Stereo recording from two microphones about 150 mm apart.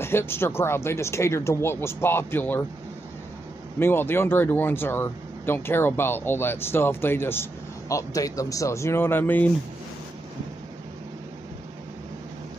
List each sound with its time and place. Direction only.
0.0 s speech: 15° left (ahead or behind)
3.8 s speech: 15° left (ahead or behind)